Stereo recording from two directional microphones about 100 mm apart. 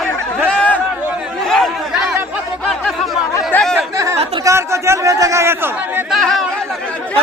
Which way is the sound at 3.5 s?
20° left (ahead or behind).